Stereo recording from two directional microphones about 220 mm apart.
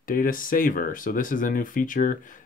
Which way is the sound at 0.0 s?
40° left (ahead or behind).